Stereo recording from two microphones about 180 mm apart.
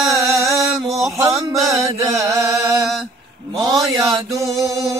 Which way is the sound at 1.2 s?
20° right (ahead or behind).